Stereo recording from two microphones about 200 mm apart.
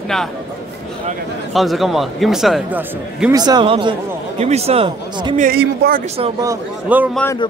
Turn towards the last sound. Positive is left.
turn(degrees=-10)  # may be behind; listen again after turning